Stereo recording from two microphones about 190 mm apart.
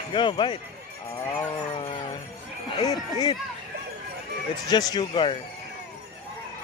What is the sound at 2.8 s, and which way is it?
Speech, 20° left (ahead or behind).